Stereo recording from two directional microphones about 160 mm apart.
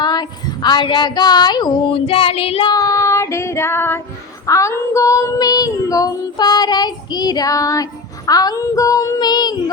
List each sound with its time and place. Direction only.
0.0 s female singing: 25° left (ahead or behind)
2.7 s child singing: 20° left (ahead or behind)
8.3 s female singing: 25° left (ahead or behind)